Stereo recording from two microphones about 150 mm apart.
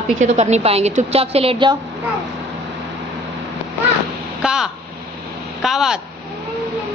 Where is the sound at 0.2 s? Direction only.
50° right (ahead or behind).